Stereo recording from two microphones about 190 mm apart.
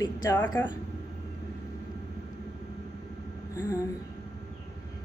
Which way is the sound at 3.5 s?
15° left (ahead or behind).